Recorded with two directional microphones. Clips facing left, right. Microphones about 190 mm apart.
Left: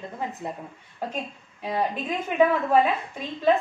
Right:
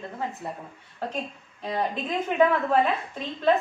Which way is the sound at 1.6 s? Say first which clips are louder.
Left 1 dB; 10° left (ahead or behind).